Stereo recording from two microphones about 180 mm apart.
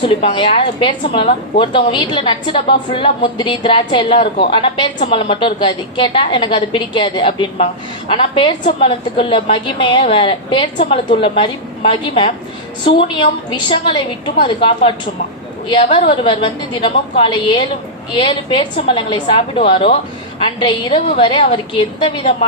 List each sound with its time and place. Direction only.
0.0 s a woman's voice: 30° left (ahead or behind)